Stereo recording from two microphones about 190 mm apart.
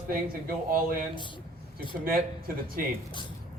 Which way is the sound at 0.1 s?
50° right (ahead or behind).